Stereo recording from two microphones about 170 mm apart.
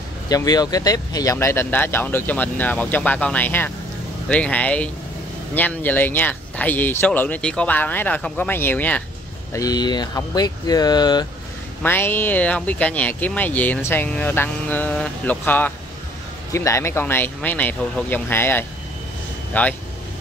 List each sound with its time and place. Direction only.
0.3 s speech: 20° left (ahead or behind)
9.5 s speech: 20° left (ahead or behind)
11.8 s speech: 10° left (ahead or behind)